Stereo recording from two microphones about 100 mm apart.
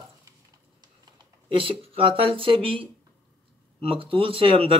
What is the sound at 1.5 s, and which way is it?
A man's voice, 65° right (ahead or behind).